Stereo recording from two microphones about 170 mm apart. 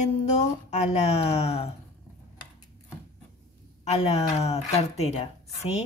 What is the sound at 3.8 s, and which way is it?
A woman's voice, 40° left (ahead or behind).